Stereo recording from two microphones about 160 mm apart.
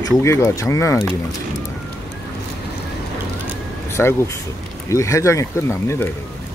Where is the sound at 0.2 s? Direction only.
20° left (ahead or behind).